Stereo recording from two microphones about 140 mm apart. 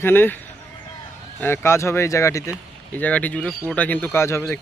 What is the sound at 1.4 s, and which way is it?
Speech, 15° left (ahead or behind).